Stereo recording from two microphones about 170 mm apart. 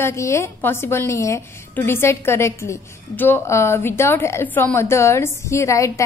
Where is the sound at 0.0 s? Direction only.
15° left (ahead or behind).